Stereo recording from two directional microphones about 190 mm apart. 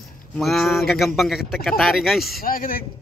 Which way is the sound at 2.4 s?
50° left (ahead or behind).